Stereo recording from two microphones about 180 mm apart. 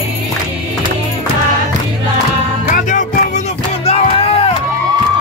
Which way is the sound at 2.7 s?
45° left (ahead or behind).